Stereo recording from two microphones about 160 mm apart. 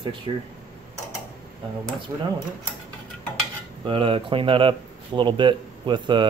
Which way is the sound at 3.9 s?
35° right (ahead or behind).